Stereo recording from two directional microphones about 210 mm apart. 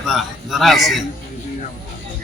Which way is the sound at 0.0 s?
Centre (ahead or behind).